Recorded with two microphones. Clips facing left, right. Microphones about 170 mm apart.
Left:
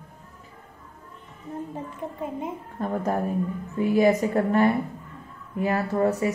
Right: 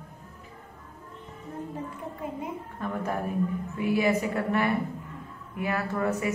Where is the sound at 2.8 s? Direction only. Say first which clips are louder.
Left 5 dB; 40° left (ahead or behind).